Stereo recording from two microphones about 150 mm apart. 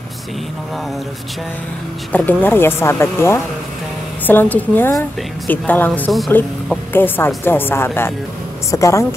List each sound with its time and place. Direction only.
2.1 s a woman's voice: 10° left (ahead or behind)